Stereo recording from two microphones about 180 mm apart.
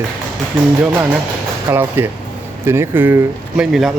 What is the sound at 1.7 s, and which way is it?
Speech, 10° right (ahead or behind).